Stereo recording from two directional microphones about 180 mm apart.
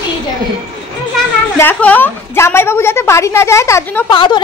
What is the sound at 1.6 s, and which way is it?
A woman's voice, 10° left (ahead or behind).